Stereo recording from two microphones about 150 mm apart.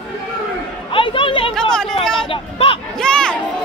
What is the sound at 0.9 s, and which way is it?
Chatter, 35° left (ahead or behind).